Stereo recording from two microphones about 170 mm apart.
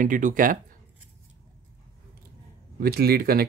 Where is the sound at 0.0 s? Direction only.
50° right (ahead or behind).